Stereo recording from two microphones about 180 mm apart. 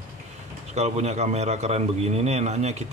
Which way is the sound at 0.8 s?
40° right (ahead or behind).